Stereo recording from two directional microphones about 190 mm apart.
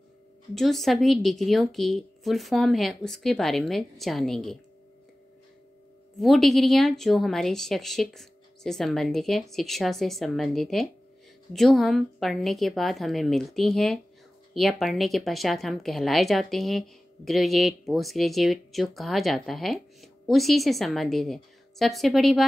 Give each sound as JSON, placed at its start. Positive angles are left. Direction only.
{"t": 0.6, "sound": "speech", "side_deg": 0}
{"t": 6.1, "sound": "speech", "side_deg": 0}